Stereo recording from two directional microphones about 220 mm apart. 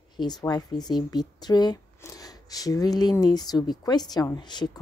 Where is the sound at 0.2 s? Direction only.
20° left (ahead or behind).